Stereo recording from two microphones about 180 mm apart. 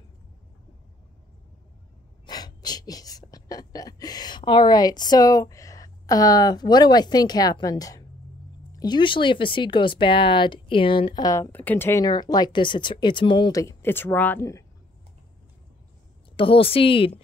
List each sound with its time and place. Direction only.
2.2 s gasp: 20° left (ahead or behind)
8.7 s speech: 25° left (ahead or behind)
16.3 s a woman's voice: 30° left (ahead or behind)